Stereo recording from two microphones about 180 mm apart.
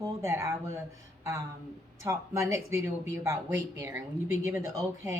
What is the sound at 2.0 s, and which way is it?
Speech, 15° right (ahead or behind).